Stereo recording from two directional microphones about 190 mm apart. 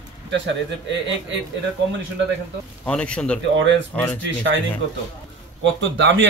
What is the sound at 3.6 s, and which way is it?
Speech, 75° right (ahead or behind).